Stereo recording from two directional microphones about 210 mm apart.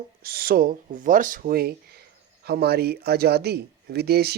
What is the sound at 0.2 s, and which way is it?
A man's voice, 45° right (ahead or behind).